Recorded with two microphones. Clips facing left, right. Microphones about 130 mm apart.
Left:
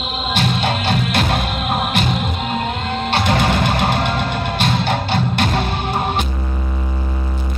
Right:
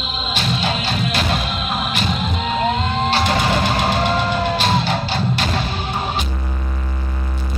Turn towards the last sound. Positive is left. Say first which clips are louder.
# left 3 dB
turn(degrees=55)  # may be behind; listen again after turning